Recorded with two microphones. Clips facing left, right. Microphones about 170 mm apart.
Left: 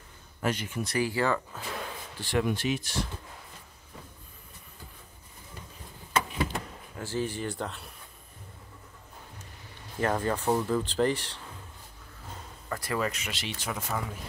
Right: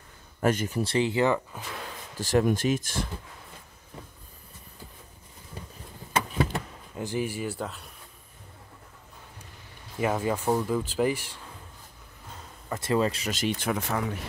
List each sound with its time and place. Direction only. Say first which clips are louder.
0.4 s speech: right 5 dB; 45° right (ahead or behind); by 1.6 s 20° right (ahead or behind)
2.1 s speech: right 5 dB; 45° right (ahead or behind)
7.0 s speech: right 2 dB; 15° right (ahead or behind)
9.9 s speech: right 1 dB; 10° right (ahead or behind)
12.6 s speech: right 5 dB; 25° right (ahead or behind)
13.3 s speech: right 8 dB; 45° right (ahead or behind); by 14.2 s 70° right (ahead or behind)